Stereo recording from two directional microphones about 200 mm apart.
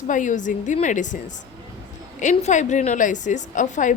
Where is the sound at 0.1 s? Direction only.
40° left (ahead or behind).